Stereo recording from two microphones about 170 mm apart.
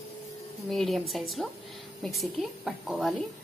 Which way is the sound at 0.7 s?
Centre (ahead or behind).